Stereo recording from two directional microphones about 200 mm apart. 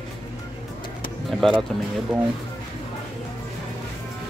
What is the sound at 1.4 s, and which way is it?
Speech, centre (ahead or behind).